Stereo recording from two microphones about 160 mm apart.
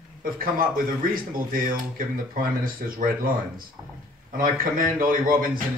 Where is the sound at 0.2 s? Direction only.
65° right (ahead or behind).